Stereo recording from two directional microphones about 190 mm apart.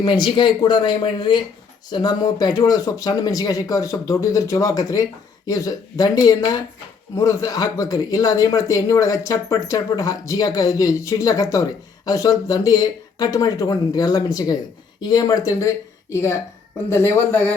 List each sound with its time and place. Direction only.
0.0 s speech: 25° left (ahead or behind)
16.9 s speech: 10° left (ahead or behind)